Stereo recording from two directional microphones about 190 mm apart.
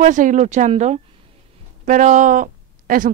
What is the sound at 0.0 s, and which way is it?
Speech, 40° right (ahead or behind).